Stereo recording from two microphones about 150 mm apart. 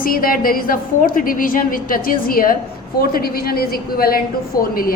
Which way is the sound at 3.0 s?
90° left.